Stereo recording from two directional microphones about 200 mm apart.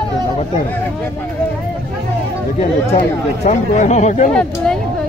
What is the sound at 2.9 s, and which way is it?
Speech, 35° left (ahead or behind).